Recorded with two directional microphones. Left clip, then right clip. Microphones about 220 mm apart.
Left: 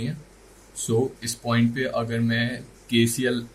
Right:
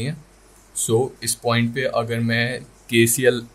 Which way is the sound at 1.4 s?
45° right (ahead or behind).